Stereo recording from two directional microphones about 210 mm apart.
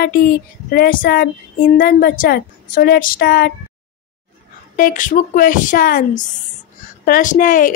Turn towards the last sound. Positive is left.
turn(degrees=40)  # may be behind; listen again after turning